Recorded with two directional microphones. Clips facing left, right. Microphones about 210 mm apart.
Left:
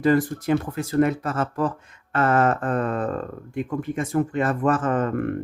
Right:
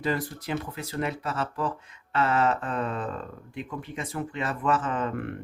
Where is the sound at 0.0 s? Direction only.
50° left (ahead or behind).